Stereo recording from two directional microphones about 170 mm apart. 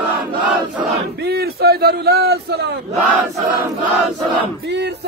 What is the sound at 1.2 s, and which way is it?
A man's voice, 70° right (ahead or behind).